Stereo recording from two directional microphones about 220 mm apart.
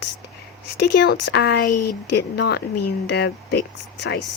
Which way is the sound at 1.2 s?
50° left (ahead or behind).